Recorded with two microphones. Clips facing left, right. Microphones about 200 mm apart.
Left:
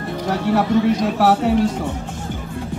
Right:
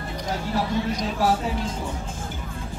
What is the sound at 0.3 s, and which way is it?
Speech, 65° left (ahead or behind).